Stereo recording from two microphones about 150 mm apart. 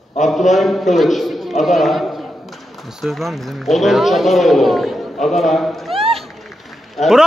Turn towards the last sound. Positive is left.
turn(degrees=0)  # may be behind; listen again after turning